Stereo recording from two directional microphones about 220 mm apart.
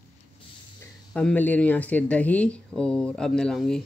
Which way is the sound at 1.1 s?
5° left (ahead or behind).